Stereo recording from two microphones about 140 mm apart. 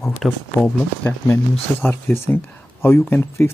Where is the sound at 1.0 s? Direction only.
15° left (ahead or behind).